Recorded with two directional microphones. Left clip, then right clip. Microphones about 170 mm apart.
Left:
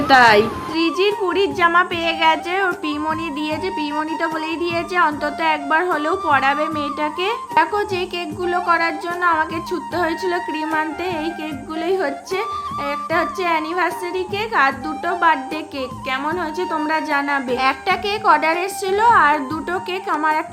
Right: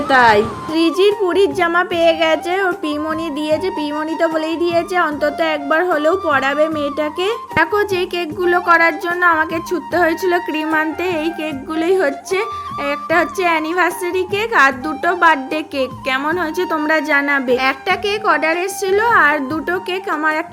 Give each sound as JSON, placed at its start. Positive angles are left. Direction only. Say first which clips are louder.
{"t": 0.1, "sound": "a woman's voice", "louder": "even", "side_deg": -5}
{"t": 0.7, "sound": "a woman's voice", "louder": "right 4 dB", "side_deg": -25}
{"t": 17.6, "sound": "a woman's voice", "louder": "right 1 dB", "side_deg": -15}